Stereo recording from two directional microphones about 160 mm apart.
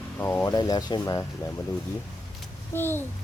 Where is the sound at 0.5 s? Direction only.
25° left (ahead or behind).